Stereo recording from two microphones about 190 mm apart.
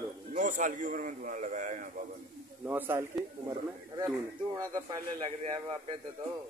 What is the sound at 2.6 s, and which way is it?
Speech, 10° right (ahead or behind).